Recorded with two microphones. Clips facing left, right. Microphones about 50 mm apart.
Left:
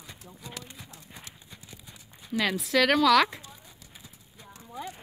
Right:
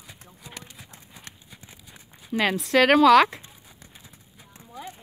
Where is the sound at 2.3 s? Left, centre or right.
Right.